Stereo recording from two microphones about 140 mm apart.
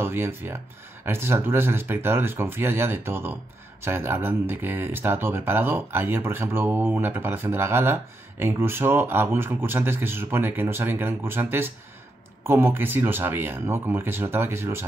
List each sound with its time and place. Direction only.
0.0 s speech: 15° right (ahead or behind)